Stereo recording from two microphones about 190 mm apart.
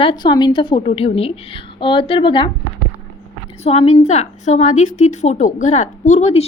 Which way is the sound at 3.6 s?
35° left (ahead or behind).